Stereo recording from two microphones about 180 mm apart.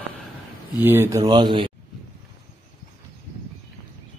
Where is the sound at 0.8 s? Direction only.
10° right (ahead or behind).